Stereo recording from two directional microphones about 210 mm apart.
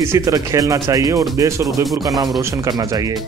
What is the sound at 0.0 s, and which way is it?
Speech, 15° right (ahead or behind).